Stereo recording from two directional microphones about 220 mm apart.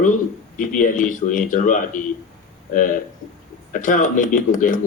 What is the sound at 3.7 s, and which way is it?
Speech, 35° left (ahead or behind).